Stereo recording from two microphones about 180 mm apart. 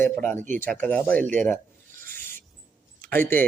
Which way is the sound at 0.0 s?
10° left (ahead or behind).